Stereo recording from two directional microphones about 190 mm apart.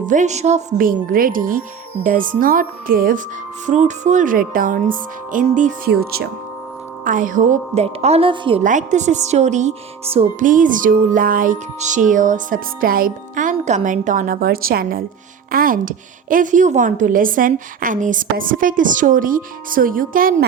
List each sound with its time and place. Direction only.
0.0 s a woman's voice: 40° right (ahead or behind)
7.0 s a woman's voice: 45° right (ahead or behind); by 8.6 s 30° right (ahead or behind)
8.6 s a woman's voice: 40° right (ahead or behind)